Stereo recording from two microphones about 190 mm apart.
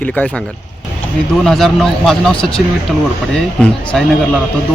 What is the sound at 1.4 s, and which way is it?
Speech, centre (ahead or behind).